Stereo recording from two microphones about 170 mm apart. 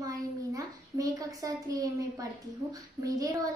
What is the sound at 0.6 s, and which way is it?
A woman's voice, 20° right (ahead or behind).